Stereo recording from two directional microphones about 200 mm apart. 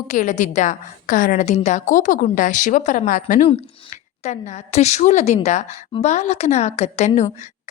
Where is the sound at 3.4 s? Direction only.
30° left (ahead or behind).